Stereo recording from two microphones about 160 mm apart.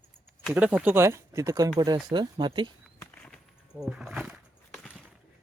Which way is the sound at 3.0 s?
5° left (ahead or behind).